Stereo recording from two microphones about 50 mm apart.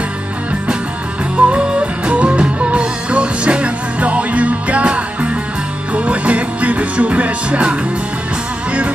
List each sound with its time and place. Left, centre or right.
1.3 s music: right